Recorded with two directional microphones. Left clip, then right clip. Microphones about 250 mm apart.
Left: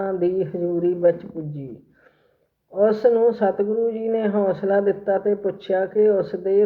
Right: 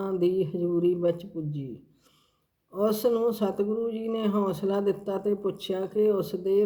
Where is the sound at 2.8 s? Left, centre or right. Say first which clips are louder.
Left 8 dB; right.